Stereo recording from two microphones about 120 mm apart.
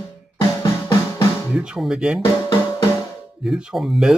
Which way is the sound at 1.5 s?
5° right (ahead or behind).